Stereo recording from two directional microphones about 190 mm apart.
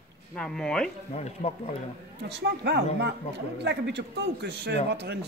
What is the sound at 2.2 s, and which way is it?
A man's voice, 65° right (ahead or behind).